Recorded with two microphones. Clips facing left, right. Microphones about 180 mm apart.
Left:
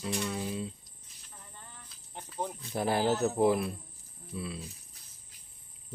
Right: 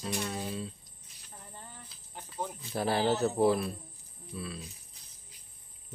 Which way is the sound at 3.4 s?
15° left (ahead or behind).